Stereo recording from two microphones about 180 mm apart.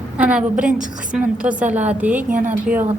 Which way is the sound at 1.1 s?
5° right (ahead or behind).